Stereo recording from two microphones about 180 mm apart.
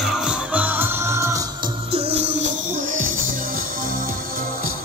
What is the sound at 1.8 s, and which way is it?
Music, 35° right (ahead or behind).